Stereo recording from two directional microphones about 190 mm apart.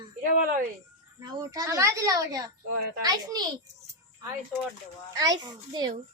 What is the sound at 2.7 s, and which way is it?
Speech, 55° right (ahead or behind).